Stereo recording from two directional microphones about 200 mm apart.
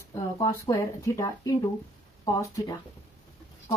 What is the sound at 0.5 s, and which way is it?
Speech, 15° left (ahead or behind).